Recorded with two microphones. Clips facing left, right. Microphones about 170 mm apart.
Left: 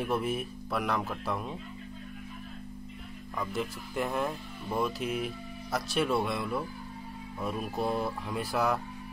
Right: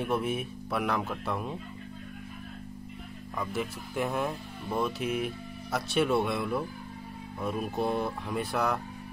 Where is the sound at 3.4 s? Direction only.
Centre (ahead or behind).